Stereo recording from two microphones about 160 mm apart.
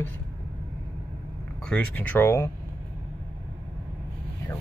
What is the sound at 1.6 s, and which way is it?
Speech, 5° left (ahead or behind).